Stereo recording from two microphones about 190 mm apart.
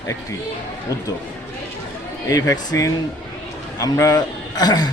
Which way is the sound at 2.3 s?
20° left (ahead or behind).